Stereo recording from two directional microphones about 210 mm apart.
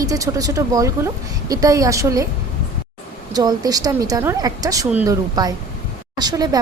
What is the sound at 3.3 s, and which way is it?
Speech, 20° right (ahead or behind).